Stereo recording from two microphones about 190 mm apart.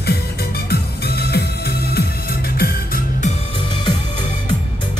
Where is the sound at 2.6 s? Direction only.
50° left (ahead or behind).